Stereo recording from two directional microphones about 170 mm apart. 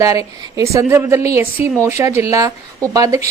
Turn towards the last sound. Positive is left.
turn(degrees=-20)  # may be behind; listen again after turning